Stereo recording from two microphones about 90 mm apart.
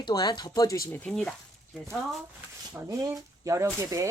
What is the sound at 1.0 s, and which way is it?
Speech, 10° left (ahead or behind).